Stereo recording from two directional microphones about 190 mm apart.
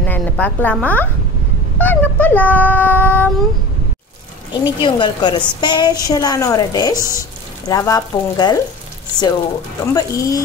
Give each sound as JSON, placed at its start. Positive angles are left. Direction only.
{"t": 0.0, "sound": "speech", "side_deg": 10}
{"t": 4.6, "sound": "a woman's voice", "side_deg": 25}
{"t": 7.0, "sound": "speech", "side_deg": -15}
{"t": 7.6, "sound": "a woman's voice", "side_deg": 15}
{"t": 9.9, "sound": "speech", "side_deg": 20}